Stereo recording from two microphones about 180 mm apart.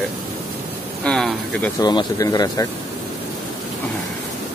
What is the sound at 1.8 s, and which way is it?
Speech, 25° left (ahead or behind).